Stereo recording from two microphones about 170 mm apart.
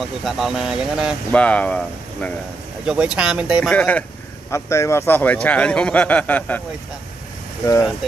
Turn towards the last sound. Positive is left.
turn(degrees=20)  # may be behind; listen again after turning